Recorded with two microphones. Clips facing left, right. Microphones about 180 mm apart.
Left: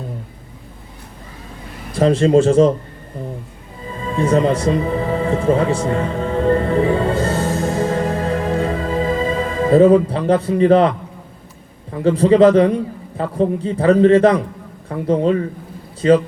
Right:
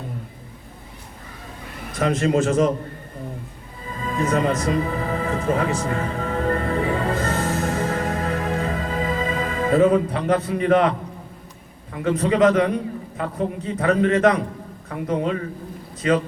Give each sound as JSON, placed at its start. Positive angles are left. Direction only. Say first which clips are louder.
{"t": 1.9, "sound": "a man's voice", "louder": "left 7 dB", "side_deg": 30}
{"t": 3.9, "sound": "music", "louder": "left 5 dB", "side_deg": 30}
{"t": 11.9, "sound": "a man's voice", "louder": "left 8 dB", "side_deg": 30}